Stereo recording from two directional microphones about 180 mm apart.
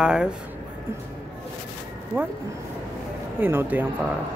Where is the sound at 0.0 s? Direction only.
5° right (ahead or behind).